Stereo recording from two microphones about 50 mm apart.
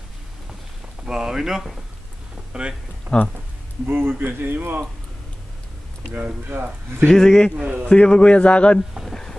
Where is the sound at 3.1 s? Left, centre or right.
Right.